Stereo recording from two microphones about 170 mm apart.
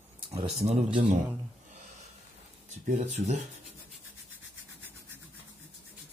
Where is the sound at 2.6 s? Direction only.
45° right (ahead or behind).